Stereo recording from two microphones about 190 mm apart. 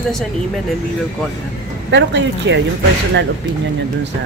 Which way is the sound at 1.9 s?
70° right (ahead or behind).